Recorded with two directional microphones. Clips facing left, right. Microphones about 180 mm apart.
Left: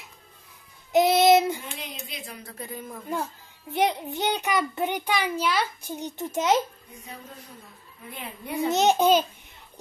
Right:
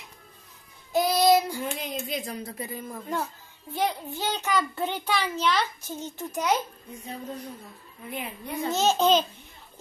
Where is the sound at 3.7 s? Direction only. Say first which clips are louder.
Left 3 dB; 20° left (ahead or behind).